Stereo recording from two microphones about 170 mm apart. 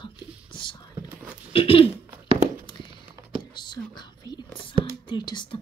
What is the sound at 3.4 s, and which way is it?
Whispering, 25° left (ahead or behind).